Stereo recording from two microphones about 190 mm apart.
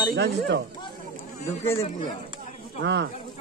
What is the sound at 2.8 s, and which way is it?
Speech, 65° right (ahead or behind).